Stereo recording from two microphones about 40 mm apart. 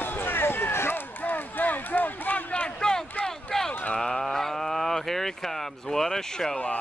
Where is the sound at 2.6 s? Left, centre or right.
Centre.